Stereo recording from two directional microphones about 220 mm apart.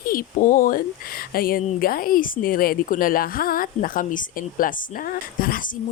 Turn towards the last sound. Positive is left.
turn(degrees=40)  # may be behind; listen again after turning